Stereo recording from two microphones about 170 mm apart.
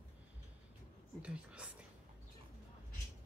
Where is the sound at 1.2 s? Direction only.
5° right (ahead or behind).